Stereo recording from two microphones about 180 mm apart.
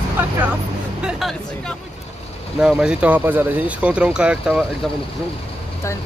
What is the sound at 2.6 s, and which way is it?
Speech, 5° right (ahead or behind).